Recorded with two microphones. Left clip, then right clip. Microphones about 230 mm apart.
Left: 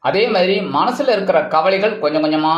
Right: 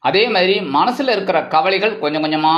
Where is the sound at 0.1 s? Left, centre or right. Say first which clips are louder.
Even; right.